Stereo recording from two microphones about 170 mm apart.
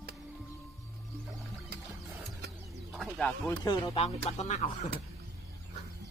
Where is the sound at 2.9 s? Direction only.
5° left (ahead or behind).